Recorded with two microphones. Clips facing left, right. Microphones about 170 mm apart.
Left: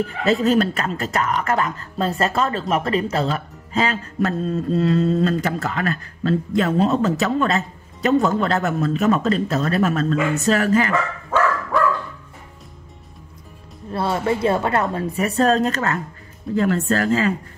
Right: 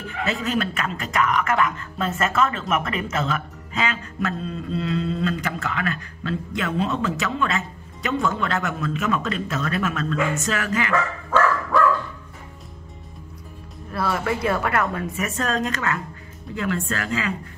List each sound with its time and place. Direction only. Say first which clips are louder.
0.2 s speech: left 7 dB; 35° left (ahead or behind)
13.9 s a woman's voice: left 3 dB; 25° left (ahead or behind)